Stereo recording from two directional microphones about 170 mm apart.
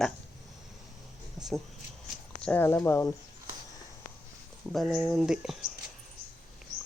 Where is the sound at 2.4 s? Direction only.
10° left (ahead or behind).